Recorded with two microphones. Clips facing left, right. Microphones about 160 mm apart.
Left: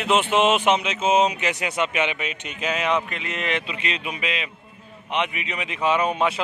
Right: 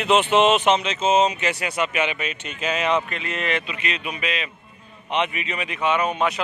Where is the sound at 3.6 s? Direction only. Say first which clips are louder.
Even; 25° left (ahead or behind).